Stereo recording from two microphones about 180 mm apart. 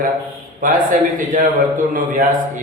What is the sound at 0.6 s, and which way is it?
A man's voice, 50° right (ahead or behind).